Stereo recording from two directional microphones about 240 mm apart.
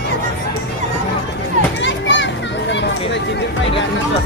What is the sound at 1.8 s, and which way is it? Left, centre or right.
Children playing, left.